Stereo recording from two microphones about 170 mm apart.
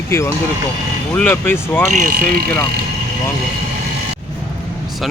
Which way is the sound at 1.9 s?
60° right (ahead or behind).